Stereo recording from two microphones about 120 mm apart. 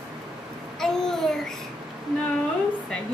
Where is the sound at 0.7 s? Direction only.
5° left (ahead or behind).